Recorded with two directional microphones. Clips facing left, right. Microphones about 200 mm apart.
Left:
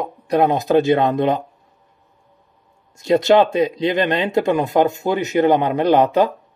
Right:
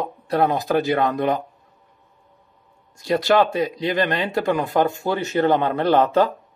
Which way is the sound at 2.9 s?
20° left (ahead or behind).